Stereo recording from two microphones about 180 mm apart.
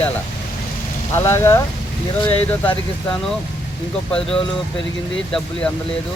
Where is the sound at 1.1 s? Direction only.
15° left (ahead or behind).